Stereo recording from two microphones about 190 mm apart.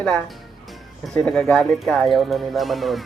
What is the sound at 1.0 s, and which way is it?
Speech, 5° left (ahead or behind).